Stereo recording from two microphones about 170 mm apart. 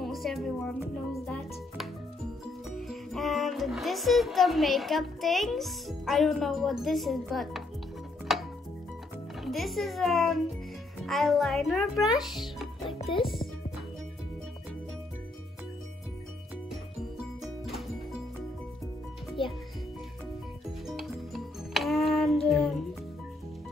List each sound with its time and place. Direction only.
0.0 s music: centre (ahead or behind)
2.9 s speech: centre (ahead or behind)
8.3 s music: centre (ahead or behind)
9.4 s a child's voice: centre (ahead or behind)
12.8 s music: 30° left (ahead or behind)
19.4 s music: 30° left (ahead or behind)
20.8 s music: centre (ahead or behind)